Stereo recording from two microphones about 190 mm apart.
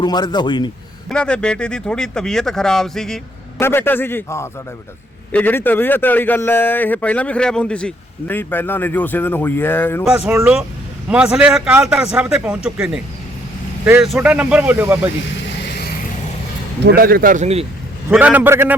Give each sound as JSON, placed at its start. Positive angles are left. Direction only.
{"t": 0.0, "sound": "a man's voice", "side_deg": 20}
{"t": 1.1, "sound": "a man's voice", "side_deg": 5}
{"t": 10.0, "sound": "speech", "side_deg": -5}
{"t": 15.2, "sound": "vehicle", "side_deg": 60}
{"t": 16.8, "sound": "speech", "side_deg": -50}
{"t": 18.1, "sound": "speech", "side_deg": -5}